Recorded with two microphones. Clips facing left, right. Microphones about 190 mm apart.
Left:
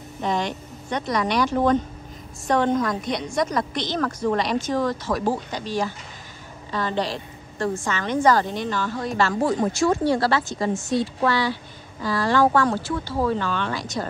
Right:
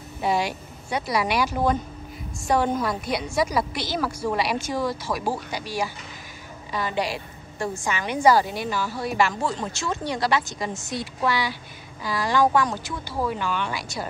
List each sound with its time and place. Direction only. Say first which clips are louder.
0.2 s a woman's voice: right 1 dB; 10° right (ahead or behind)